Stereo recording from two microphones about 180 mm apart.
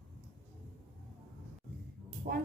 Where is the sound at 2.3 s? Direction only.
45° right (ahead or behind).